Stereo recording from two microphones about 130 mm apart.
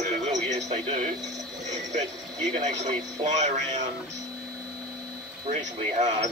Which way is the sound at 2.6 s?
65° right (ahead or behind).